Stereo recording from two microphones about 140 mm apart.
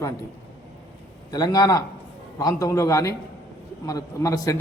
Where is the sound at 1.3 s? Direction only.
25° left (ahead or behind).